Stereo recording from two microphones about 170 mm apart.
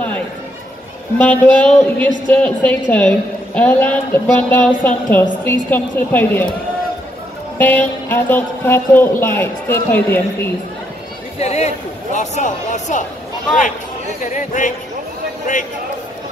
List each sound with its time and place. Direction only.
1.1 s a woman's voice: 10° left (ahead or behind)
7.5 s a woman's voice: 10° left (ahead or behind)
11.3 s a man's voice: 40° left (ahead or behind)
14.2 s a man's voice: 50° left (ahead or behind)